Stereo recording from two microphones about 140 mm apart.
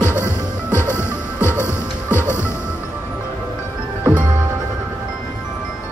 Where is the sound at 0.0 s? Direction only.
15° left (ahead or behind).